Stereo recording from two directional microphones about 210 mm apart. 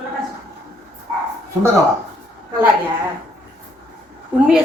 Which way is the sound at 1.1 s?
10° right (ahead or behind).